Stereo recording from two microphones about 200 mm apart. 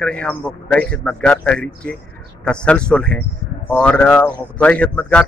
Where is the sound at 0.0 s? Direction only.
5° left (ahead or behind).